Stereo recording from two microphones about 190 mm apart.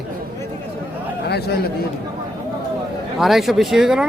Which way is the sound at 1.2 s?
60° left (ahead or behind).